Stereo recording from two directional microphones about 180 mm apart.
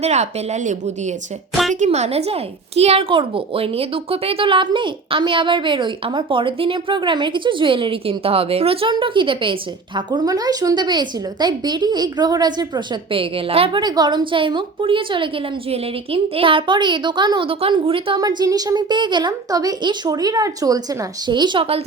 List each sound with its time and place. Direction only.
0.0 s speech: 40° right (ahead or behind)
1.8 s speech: 40° right (ahead or behind)